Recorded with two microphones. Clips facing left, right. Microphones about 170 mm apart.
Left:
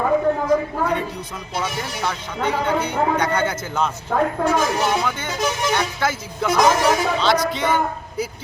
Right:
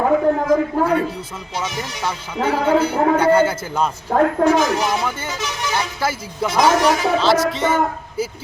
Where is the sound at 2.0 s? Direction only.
5° right (ahead or behind).